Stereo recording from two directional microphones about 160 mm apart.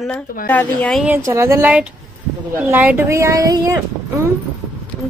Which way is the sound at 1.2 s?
20° right (ahead or behind).